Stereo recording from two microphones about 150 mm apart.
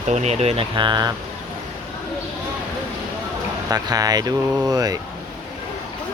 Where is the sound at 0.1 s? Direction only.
50° right (ahead or behind); by 1.1 s 30° right (ahead or behind).